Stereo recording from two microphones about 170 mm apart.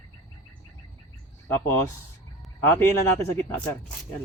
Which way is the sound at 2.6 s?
15° left (ahead or behind).